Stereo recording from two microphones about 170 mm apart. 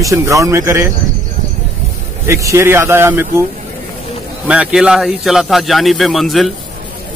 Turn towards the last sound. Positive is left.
turn(degrees=0)  # may be behind; listen again after turning